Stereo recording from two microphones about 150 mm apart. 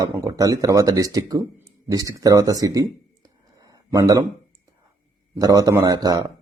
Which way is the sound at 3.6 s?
25° right (ahead or behind).